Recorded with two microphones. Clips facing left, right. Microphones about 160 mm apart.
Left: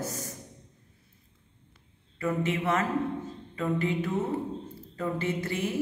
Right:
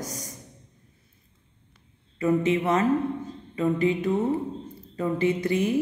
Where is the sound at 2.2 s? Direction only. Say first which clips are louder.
Right 6 dB; 20° right (ahead or behind).